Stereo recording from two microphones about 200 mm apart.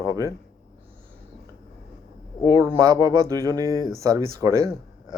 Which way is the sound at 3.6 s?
15° left (ahead or behind).